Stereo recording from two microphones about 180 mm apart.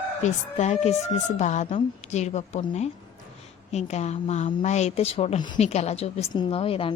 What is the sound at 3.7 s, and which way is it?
A woman's voice, 40° left (ahead or behind).